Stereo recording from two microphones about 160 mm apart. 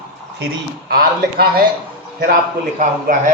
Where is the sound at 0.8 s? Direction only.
75° right (ahead or behind).